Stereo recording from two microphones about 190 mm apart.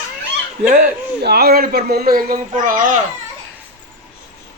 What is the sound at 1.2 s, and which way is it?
Speech, 55° right (ahead or behind).